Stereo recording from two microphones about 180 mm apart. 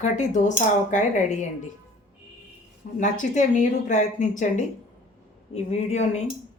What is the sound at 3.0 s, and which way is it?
Speech, 45° left (ahead or behind).